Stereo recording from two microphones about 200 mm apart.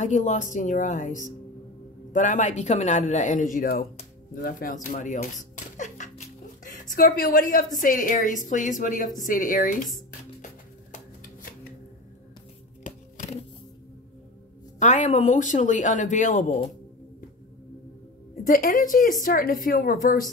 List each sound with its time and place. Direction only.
0.0 s speech: 35° left (ahead or behind)
12.8 s a sound: 35° left (ahead or behind)
14.8 s speech: 35° left (ahead or behind)
18.3 s a woman's voice: 45° left (ahead or behind)